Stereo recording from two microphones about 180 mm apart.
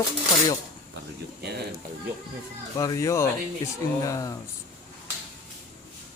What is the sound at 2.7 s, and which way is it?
Speech, 20° left (ahead or behind).